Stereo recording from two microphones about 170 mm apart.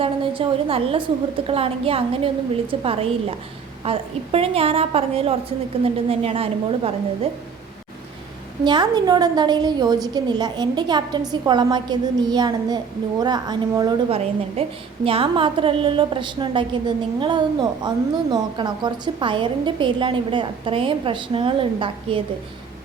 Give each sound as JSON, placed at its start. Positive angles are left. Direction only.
{"t": 0.0, "sound": "a woman's voice", "side_deg": -30}
{"t": 8.6, "sound": "a woman's voice", "side_deg": -25}
{"t": 14.1, "sound": "a woman's voice", "side_deg": -40}